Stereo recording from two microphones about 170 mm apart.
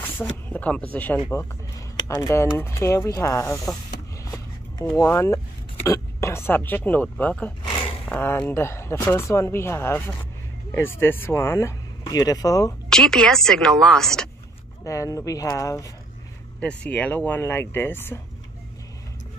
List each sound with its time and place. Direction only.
0.0 s speech: 10° left (ahead or behind)
4.2 s a sound: 20° left (ahead or behind)
4.9 s speech: 15° left (ahead or behind)
7.7 s a sound: 30° left (ahead or behind)
8.0 s speech: 10° left (ahead or behind)
12.9 s a woman's voice: 5° left (ahead or behind)
14.9 s speech: 20° left (ahead or behind)
16.5 s speech: 5° left (ahead or behind)